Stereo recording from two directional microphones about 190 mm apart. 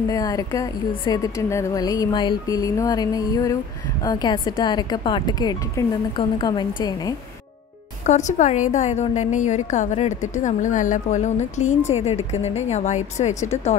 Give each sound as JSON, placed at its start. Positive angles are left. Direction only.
{"t": 0.1, "sound": "a woman's voice", "side_deg": 20}
{"t": 8.0, "sound": "a woman's voice", "side_deg": 40}